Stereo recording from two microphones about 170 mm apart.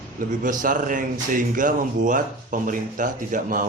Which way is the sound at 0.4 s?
50° right (ahead or behind).